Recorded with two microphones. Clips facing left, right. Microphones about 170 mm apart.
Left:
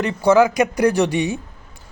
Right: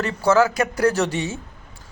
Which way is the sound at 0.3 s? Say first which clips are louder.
Left 3 dB; 15° left (ahead or behind).